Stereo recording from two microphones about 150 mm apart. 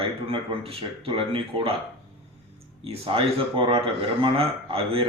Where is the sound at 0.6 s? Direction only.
40° right (ahead or behind).